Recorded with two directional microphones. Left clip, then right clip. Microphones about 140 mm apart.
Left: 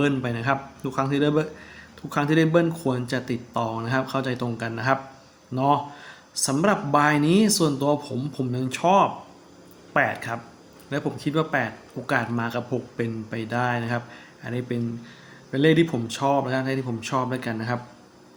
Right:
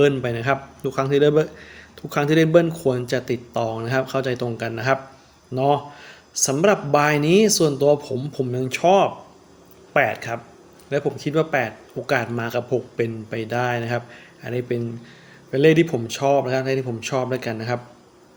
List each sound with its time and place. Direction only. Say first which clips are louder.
0.0 s speech: right 6 dB; 40° right (ahead or behind)